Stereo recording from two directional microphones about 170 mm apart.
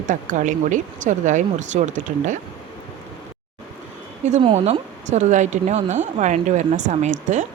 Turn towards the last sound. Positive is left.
turn(degrees=-45)  # may be behind; listen again after turning